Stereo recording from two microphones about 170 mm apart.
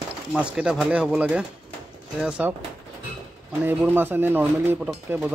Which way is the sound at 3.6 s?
10° right (ahead or behind).